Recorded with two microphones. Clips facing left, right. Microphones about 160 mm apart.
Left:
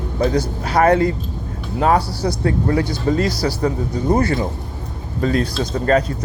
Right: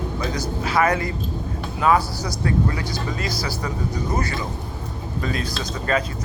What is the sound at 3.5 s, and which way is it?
Speech, 55° left (ahead or behind).